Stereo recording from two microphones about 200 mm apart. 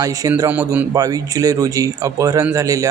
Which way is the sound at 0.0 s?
15° right (ahead or behind).